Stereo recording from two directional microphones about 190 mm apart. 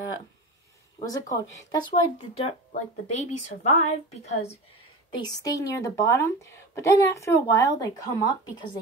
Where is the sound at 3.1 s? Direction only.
35° left (ahead or behind).